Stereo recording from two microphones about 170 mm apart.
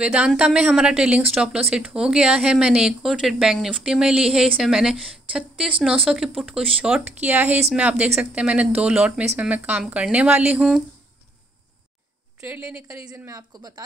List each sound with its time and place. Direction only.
0.0 s speech: 5° right (ahead or behind)
12.4 s speech: 10° right (ahead or behind)